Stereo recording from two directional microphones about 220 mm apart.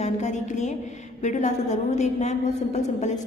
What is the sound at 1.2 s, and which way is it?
A woman's voice, 35° left (ahead or behind).